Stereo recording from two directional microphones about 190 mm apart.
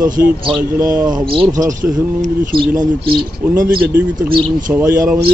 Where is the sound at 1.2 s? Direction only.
25° right (ahead or behind).